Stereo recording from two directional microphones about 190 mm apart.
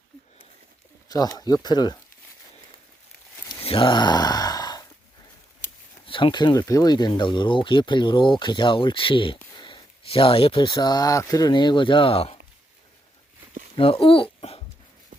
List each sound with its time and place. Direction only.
1.0 s speech: 20° left (ahead or behind)
3.6 s sigh: 30° left (ahead or behind)
6.1 s speech: 25° left (ahead or behind)
13.7 s speech: 30° left (ahead or behind)